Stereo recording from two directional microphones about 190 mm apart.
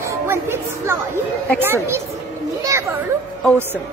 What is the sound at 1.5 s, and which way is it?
Speech, 10° right (ahead or behind).